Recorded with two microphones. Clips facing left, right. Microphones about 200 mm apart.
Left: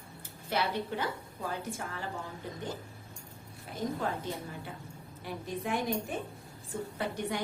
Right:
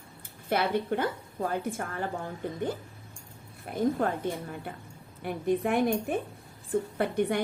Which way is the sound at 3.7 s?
55° right (ahead or behind).